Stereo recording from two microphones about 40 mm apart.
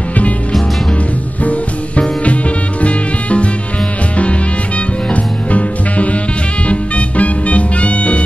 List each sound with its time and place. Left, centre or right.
2.8 s music: left
5.1 s music: left